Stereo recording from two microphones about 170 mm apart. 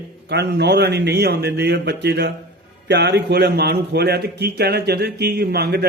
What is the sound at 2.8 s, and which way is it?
A man's voice, 90° right.